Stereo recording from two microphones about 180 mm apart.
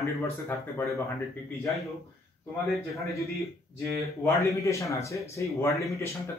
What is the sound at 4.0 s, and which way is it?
Speech, 15° left (ahead or behind).